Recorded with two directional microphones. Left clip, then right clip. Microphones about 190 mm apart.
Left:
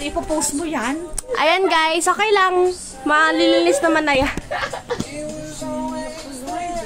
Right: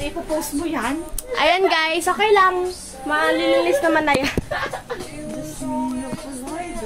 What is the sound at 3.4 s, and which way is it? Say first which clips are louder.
Speech: left 2 dB; 25° left (ahead or behind).